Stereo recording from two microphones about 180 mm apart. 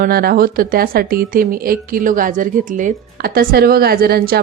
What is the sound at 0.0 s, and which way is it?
Speech, 55° right (ahead or behind).